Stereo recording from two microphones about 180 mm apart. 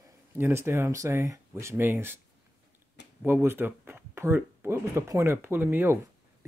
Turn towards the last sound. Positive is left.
turn(degrees=-15)  # may be behind; listen again after turning